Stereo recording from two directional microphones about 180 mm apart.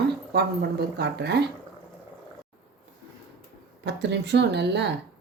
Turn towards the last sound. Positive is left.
turn(degrees=-70)  # may be behind; listen again after turning